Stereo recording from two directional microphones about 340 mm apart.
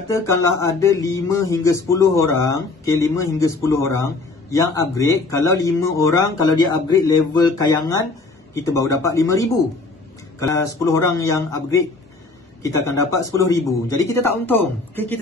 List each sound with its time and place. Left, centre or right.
0.1 s speech: centre